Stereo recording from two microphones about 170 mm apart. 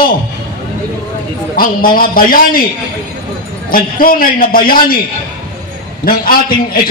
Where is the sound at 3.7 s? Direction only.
55° left (ahead or behind).